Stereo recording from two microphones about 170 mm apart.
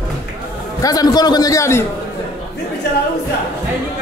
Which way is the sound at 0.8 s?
20° left (ahead or behind).